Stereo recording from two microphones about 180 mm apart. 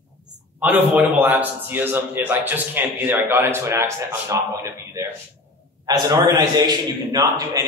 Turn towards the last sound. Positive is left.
turn(degrees=-20)  # may be behind; listen again after turning